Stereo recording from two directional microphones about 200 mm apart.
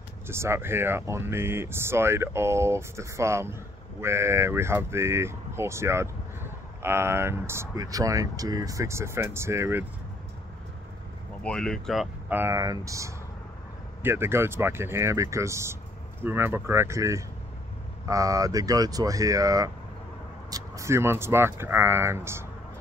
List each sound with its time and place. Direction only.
0.3 s speech: 15° right (ahead or behind)
11.4 s speech: 5° left (ahead or behind); by 22.5 s 15° right (ahead or behind)